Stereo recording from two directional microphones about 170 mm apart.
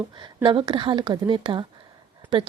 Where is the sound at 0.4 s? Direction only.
25° right (ahead or behind).